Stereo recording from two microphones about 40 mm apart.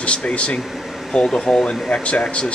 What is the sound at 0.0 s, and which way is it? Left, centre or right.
Speech, left.